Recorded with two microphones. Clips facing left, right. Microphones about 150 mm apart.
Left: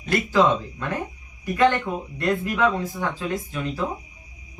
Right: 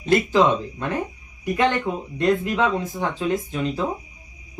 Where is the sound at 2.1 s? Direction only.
20° right (ahead or behind).